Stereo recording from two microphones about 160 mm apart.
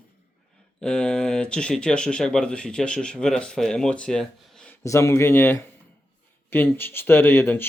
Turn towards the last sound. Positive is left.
turn(degrees=15)  # may be behind; listen again after turning